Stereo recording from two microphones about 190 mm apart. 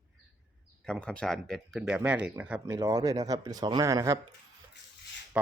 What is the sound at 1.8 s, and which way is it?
Speech, 10° right (ahead or behind).